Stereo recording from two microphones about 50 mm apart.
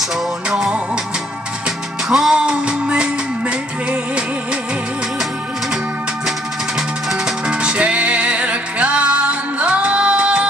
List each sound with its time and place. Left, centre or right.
0.5 s music: centre
2.0 s music: centre
2.3 s music: right
7.4 s music: centre